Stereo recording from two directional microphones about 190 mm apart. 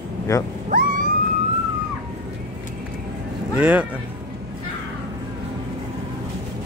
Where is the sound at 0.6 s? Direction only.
45° right (ahead or behind).